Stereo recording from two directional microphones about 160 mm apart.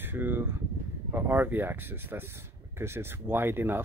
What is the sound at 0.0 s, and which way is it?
Speech, 10° right (ahead or behind).